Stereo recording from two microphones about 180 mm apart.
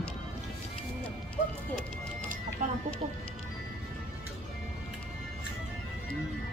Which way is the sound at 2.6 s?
40° right (ahead or behind).